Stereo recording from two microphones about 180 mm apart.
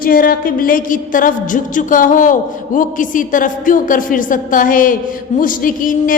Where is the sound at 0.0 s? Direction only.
50° left (ahead or behind).